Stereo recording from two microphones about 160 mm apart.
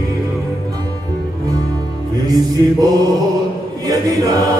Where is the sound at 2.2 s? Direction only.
25° right (ahead or behind).